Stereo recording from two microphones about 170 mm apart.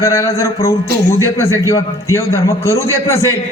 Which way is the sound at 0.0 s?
15° left (ahead or behind).